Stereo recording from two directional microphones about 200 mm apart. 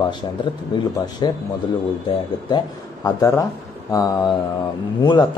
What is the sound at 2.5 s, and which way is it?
A man's voice, 20° left (ahead or behind).